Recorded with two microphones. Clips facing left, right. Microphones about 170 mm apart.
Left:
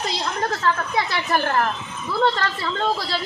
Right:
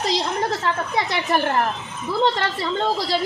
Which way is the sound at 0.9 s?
20° right (ahead or behind).